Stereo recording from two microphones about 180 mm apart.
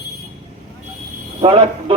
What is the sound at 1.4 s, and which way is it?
Speech, 30° right (ahead or behind).